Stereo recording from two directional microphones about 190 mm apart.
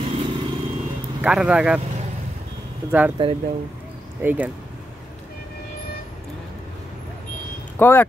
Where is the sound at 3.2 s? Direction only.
25° right (ahead or behind).